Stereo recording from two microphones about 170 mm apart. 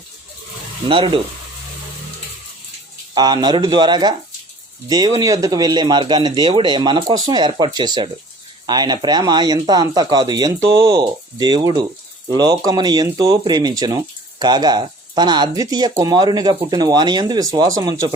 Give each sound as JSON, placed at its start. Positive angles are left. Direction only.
{"t": 0.9, "sound": "speech", "side_deg": -30}
{"t": 3.2, "sound": "speech", "side_deg": -25}